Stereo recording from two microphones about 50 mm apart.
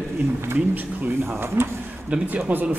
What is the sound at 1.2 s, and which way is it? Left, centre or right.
Speech, right.